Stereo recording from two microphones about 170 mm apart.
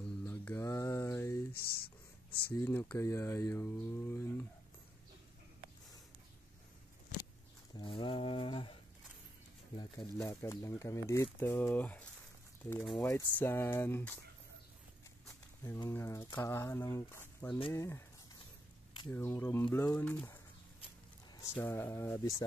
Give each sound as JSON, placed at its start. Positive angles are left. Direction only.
{"t": 0.2, "sound": "mantra", "side_deg": 10}
{"t": 1.5, "sound": "a sound", "side_deg": 65}
{"t": 2.5, "sound": "speech", "side_deg": 15}
{"t": 7.7, "sound": "a sound", "side_deg": 30}
{"t": 10.1, "sound": "speech", "side_deg": 15}
{"t": 13.0, "sound": "speech", "side_deg": 20}
{"t": 15.6, "sound": "speech", "side_deg": 15}
{"t": 19.0, "sound": "speech", "side_deg": 15}
{"t": 21.4, "sound": "speech", "side_deg": 15}